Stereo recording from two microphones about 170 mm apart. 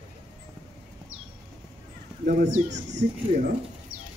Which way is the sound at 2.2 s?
50° right (ahead or behind).